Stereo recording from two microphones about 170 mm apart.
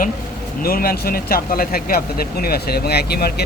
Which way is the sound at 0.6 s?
60° left (ahead or behind).